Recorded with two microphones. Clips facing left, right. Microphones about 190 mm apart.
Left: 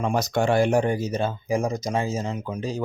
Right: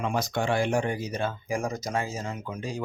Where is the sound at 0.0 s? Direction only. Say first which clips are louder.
Left 5 dB; 40° left (ahead or behind).